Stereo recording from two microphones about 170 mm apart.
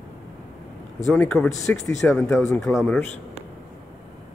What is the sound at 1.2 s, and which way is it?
Speech, 5° left (ahead or behind).